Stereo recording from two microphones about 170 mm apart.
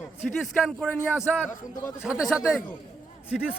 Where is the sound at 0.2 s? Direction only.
5° left (ahead or behind).